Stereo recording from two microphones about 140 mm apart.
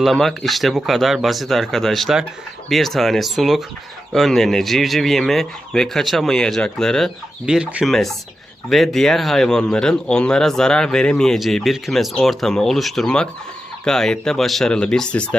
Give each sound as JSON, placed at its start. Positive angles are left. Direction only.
{"t": 0.0, "sound": "speech", "side_deg": 0}